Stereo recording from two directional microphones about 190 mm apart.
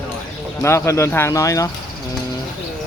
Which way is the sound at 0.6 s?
15° left (ahead or behind).